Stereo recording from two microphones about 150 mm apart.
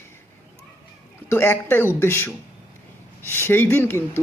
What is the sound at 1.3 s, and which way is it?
Speech, 15° left (ahead or behind).